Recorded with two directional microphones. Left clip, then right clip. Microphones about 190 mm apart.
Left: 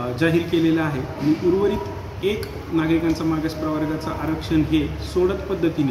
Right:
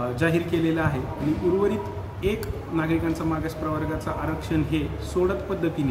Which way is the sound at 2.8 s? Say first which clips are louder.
Left 5 dB; 10° right (ahead or behind).